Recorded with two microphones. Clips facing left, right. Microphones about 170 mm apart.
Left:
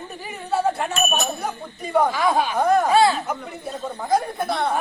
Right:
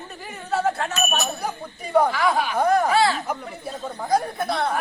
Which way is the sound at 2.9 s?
20° left (ahead or behind).